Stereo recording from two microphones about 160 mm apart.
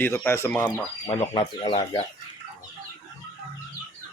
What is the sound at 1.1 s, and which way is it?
Speech, 35° left (ahead or behind).